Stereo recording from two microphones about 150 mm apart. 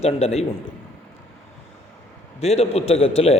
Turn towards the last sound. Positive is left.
turn(degrees=45)  # may be behind; listen again after turning